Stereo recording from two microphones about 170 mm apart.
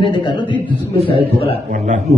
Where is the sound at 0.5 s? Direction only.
30° right (ahead or behind).